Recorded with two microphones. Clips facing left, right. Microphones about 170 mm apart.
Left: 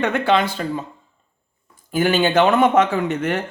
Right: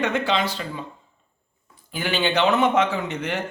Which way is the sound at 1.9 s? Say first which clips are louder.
Left 7 dB; 45° left (ahead or behind).